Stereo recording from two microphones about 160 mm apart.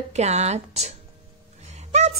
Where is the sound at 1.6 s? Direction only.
45° right (ahead or behind).